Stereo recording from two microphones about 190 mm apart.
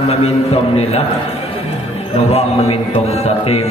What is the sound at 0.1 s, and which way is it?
Speech, 30° left (ahead or behind).